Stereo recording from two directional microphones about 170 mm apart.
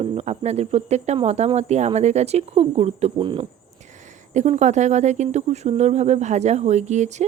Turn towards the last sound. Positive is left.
turn(degrees=-45)  # may be behind; listen again after turning